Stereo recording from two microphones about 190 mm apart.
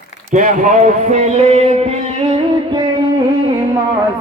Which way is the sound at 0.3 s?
40° right (ahead or behind).